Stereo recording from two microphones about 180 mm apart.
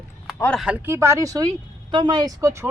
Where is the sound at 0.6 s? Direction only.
5° right (ahead or behind).